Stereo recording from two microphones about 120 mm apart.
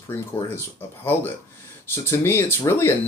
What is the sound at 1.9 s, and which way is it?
Speech, 20° left (ahead or behind).